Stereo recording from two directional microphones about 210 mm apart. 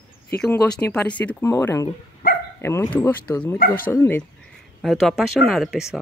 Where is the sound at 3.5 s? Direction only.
45° left (ahead or behind).